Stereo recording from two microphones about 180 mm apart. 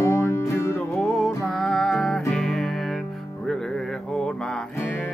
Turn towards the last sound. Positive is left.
turn(degrees=5)  # may be behind; listen again after turning